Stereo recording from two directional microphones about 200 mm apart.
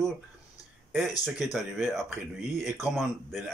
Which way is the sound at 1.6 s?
10° right (ahead or behind).